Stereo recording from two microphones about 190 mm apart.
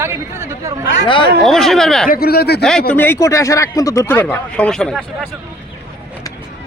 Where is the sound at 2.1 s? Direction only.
55° left (ahead or behind).